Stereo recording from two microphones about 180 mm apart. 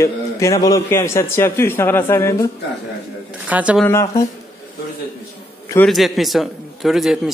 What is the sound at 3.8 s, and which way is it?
Speech, 20° left (ahead or behind).